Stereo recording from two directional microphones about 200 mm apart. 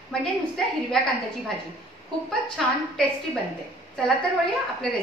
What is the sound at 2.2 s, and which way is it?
Speech, 5° left (ahead or behind).